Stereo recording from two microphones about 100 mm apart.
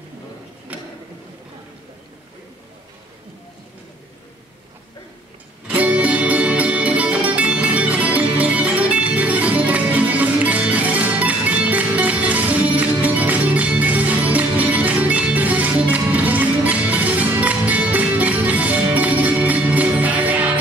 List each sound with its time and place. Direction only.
5.7 s music: 15° right (ahead or behind)